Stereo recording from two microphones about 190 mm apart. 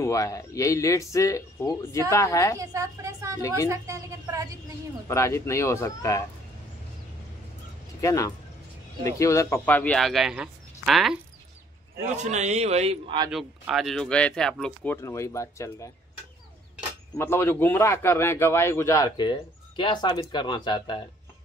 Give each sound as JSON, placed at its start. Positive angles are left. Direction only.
{"t": 0.0, "sound": "speech", "side_deg": 15}
{"t": 2.6, "sound": "speech", "side_deg": -15}
{"t": 5.0, "sound": "speech", "side_deg": 15}
{"t": 8.0, "sound": "speech", "side_deg": 15}
{"t": 12.2, "sound": "a man's voice", "side_deg": -35}
{"t": 13.3, "sound": "speech", "side_deg": 0}
{"t": 17.2, "sound": "speech", "side_deg": 15}